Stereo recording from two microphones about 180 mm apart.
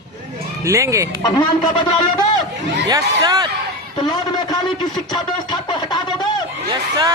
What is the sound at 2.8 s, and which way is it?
Speech, 20° right (ahead or behind).